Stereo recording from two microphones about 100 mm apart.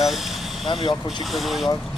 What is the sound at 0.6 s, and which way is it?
Speech, 60° left (ahead or behind).